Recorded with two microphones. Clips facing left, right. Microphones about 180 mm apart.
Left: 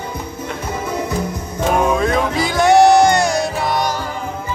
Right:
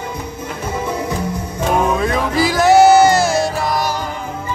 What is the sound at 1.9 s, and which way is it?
Music, centre (ahead or behind).